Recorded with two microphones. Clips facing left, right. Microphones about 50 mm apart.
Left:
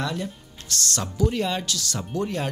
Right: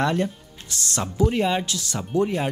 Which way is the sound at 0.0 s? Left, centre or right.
Right.